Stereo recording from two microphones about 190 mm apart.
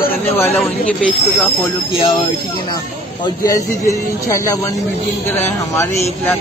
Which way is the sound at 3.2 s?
20° left (ahead or behind).